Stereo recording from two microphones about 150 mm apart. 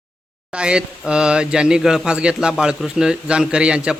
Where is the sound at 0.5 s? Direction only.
5° right (ahead or behind).